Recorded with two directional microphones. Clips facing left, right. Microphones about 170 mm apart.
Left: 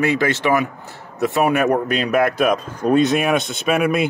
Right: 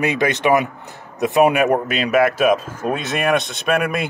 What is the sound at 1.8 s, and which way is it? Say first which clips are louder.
Speech: right 1 dB; 5° right (ahead or behind).